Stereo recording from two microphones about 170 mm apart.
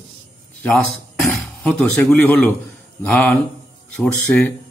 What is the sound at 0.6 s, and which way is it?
Speech, centre (ahead or behind).